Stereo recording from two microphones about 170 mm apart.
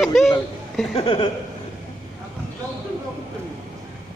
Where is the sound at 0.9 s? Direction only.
30° left (ahead or behind).